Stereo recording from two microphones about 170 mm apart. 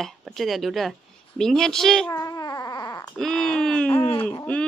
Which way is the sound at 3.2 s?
5° left (ahead or behind).